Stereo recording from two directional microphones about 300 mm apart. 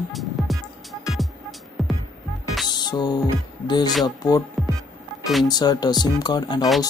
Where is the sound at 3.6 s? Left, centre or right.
Centre.